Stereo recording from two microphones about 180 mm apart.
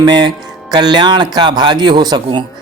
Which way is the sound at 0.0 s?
25° right (ahead or behind).